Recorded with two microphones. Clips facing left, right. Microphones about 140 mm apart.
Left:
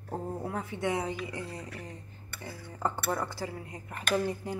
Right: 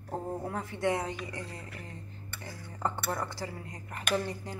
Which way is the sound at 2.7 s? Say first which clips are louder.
Left 2 dB; 5° left (ahead or behind).